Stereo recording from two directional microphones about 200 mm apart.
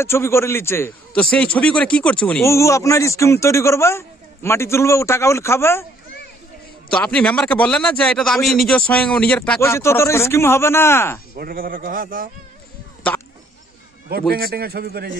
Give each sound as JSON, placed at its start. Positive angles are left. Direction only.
{"t": 0.0, "sound": "a man's voice", "side_deg": 15}
{"t": 6.9, "sound": "a man's voice", "side_deg": 5}
{"t": 11.3, "sound": "a man's voice", "side_deg": -45}
{"t": 14.3, "sound": "a man's voice", "side_deg": -50}